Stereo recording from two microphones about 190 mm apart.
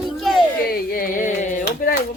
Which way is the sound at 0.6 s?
50° left (ahead or behind).